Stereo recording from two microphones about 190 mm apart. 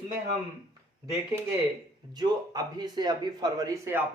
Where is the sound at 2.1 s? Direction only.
20° right (ahead or behind).